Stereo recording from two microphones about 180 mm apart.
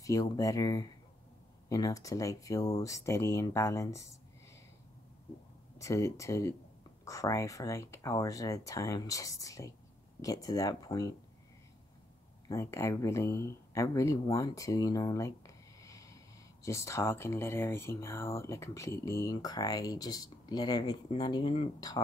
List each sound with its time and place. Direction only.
0.0 s speech: 20° left (ahead or behind)
5.8 s speech: 15° left (ahead or behind)
12.4 s speech: 15° left (ahead or behind)